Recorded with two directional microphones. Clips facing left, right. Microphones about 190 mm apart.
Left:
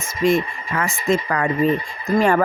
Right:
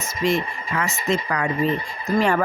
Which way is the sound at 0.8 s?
50° left (ahead or behind).